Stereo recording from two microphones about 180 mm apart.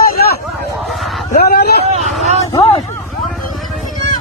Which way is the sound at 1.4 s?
60° left (ahead or behind).